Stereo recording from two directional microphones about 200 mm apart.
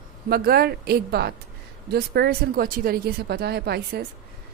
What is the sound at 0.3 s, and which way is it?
A woman's voice, 50° right (ahead or behind).